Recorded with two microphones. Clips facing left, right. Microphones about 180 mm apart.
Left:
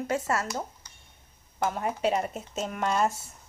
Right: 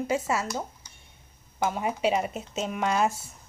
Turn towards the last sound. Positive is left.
turn(degrees=-5)  # may be behind; listen again after turning